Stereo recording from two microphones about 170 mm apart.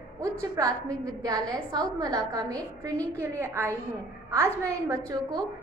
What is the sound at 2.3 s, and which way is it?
A woman's voice, 20° right (ahead or behind).